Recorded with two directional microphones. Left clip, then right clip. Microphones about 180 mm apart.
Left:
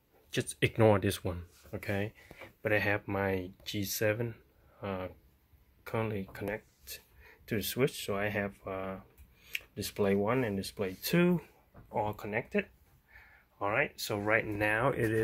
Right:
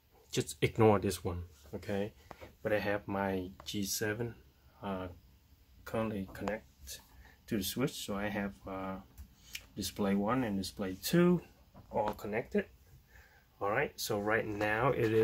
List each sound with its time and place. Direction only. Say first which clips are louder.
0.3 s speech: left 2 dB; 5° left (ahead or behind)